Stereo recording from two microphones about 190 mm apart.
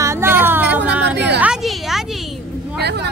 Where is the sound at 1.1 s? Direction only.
60° right (ahead or behind).